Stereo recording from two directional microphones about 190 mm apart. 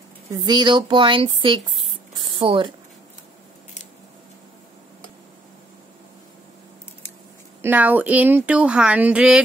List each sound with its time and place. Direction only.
0.3 s speech: 20° right (ahead or behind)
7.6 s speech: 10° right (ahead or behind)